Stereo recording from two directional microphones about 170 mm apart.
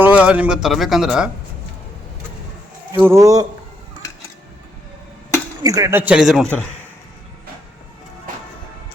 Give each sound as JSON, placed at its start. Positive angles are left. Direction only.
{"t": 0.0, "sound": "speech", "side_deg": -5}
{"t": 3.0, "sound": "a man's voice", "side_deg": -15}
{"t": 5.6, "sound": "a man's voice", "side_deg": -20}